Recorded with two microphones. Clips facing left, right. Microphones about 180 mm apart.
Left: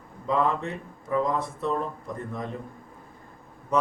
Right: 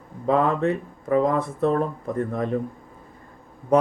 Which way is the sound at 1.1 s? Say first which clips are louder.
Right 5 dB; 55° right (ahead or behind).